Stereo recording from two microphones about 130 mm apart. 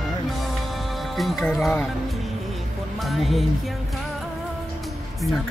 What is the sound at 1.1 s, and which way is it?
Music, centre (ahead or behind).